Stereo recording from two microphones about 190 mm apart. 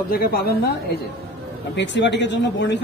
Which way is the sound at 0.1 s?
55° left (ahead or behind).